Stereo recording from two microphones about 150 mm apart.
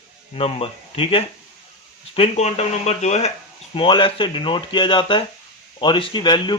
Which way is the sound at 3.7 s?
35° left (ahead or behind).